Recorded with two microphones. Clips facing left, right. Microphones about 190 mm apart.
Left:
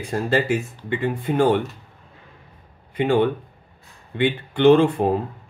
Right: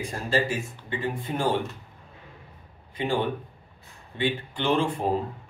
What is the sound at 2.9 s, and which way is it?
Speech, 65° left (ahead or behind).